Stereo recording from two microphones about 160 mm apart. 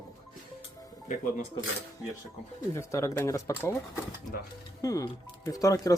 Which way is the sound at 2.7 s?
15° left (ahead or behind).